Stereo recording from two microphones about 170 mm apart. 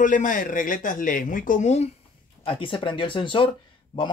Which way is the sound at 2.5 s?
30° left (ahead or behind).